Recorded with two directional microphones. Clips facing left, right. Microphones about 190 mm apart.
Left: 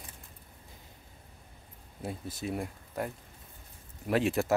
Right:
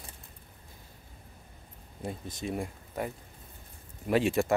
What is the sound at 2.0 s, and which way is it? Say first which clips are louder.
Speech: even; 5° left (ahead or behind).